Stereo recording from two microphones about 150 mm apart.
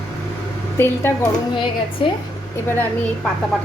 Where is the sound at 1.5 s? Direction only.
35° left (ahead or behind).